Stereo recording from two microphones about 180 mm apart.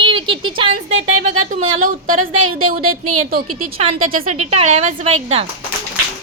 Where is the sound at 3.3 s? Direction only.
55° right (ahead or behind).